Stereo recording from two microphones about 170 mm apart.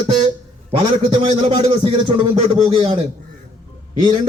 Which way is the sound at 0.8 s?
35° right (ahead or behind).